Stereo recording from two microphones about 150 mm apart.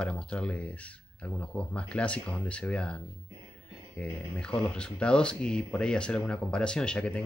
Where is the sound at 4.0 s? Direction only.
5° left (ahead or behind).